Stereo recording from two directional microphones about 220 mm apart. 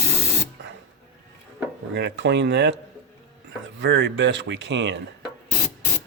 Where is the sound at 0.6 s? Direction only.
55° right (ahead or behind).